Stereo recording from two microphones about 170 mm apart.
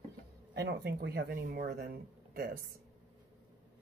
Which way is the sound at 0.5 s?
80° right.